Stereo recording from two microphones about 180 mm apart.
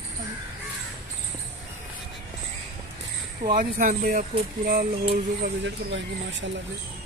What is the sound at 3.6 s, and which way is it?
Speech, 50° right (ahead or behind).